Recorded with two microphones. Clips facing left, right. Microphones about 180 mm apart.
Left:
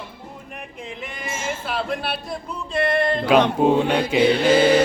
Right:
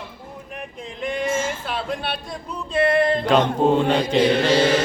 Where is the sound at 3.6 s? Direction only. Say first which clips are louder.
Even; 10° left (ahead or behind).